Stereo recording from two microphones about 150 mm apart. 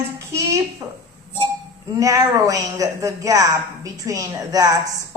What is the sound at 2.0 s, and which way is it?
Speech, 20° right (ahead or behind).